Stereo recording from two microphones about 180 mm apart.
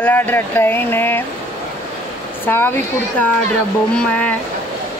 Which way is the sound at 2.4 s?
10° left (ahead or behind).